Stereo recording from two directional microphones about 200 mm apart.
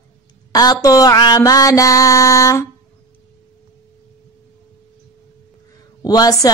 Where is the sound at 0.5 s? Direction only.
20° left (ahead or behind).